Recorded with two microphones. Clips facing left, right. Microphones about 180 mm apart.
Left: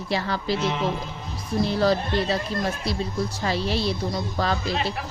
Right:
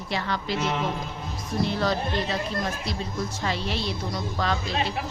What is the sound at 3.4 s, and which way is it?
Speech, 35° left (ahead or behind).